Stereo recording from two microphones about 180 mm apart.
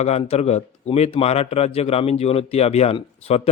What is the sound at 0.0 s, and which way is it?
A man's voice, 35° left (ahead or behind).